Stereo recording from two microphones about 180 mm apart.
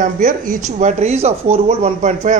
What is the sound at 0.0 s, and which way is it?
A man's voice, 50° right (ahead or behind).